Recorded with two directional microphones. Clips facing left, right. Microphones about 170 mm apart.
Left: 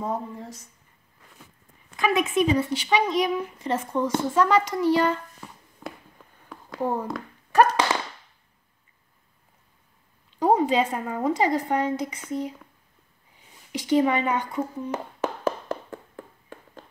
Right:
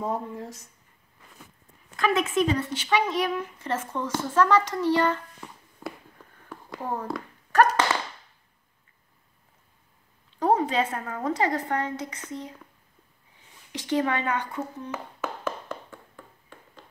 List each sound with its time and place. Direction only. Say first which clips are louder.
0.0 s a woman's voice: even; centre (ahead or behind)
2.0 s a woman's voice: left 1 dB; 5° left (ahead or behind)
2.4 s speech: left 3 dB; 15° left (ahead or behind)
6.8 s speech: left 4 dB; 10° left (ahead or behind)
10.4 s speech: left 3 dB; 15° left (ahead or behind)
13.7 s speech: left 5 dB; 15° left (ahead or behind)
15.1 s tap: left 6 dB; 40° left (ahead or behind)